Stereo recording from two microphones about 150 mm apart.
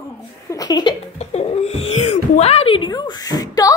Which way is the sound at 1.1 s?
45° left (ahead or behind).